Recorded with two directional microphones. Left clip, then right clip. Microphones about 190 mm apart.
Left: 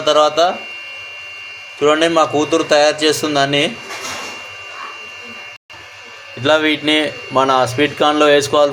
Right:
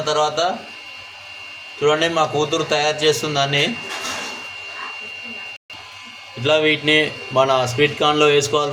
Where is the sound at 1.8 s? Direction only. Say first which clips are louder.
Left 4 dB; 25° left (ahead or behind).